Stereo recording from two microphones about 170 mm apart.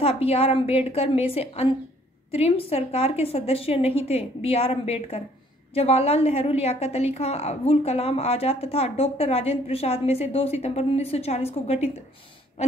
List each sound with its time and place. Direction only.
0.0 s a woman's voice: 35° left (ahead or behind)